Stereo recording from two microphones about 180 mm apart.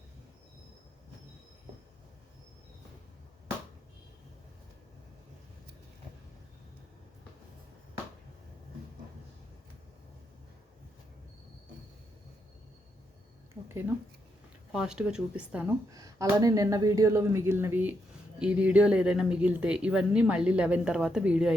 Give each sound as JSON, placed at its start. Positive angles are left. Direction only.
{"t": 14.7, "sound": "speech", "side_deg": -5}
{"t": 15.9, "sound": "speech", "side_deg": -20}